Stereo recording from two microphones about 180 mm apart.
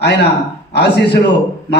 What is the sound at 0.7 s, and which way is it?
Speech, 70° left (ahead or behind).